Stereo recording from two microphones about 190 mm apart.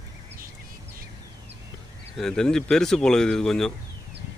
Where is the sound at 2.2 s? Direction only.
5° left (ahead or behind).